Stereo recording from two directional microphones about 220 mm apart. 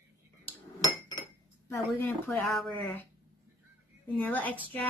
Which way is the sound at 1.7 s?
10° left (ahead or behind).